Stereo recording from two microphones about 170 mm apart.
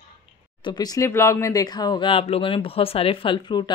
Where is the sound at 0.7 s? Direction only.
25° left (ahead or behind).